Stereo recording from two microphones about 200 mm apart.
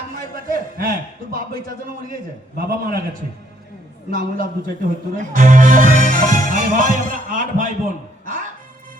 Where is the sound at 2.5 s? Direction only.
45° right (ahead or behind).